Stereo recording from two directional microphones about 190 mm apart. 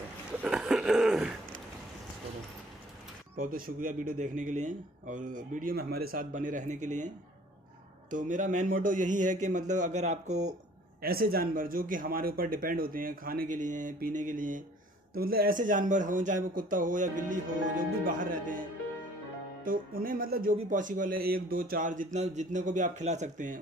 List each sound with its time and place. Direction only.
0.4 s a sound: 5° right (ahead or behind)
3.3 s a man's voice: 50° right (ahead or behind)
8.1 s speech: 45° right (ahead or behind)
11.0 s a man's voice: 50° right (ahead or behind)